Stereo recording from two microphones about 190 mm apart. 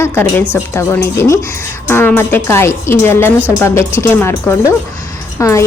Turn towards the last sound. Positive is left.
turn(degrees=15)  # may be behind; listen again after turning